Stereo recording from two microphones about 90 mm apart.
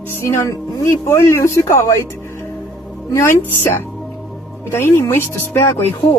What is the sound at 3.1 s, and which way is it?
Speech, 30° left (ahead or behind).